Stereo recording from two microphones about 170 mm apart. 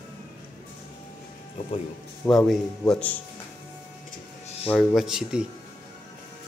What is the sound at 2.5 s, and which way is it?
Speech, 5° left (ahead or behind).